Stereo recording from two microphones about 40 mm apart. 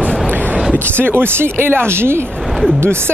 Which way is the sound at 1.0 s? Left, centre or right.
Right.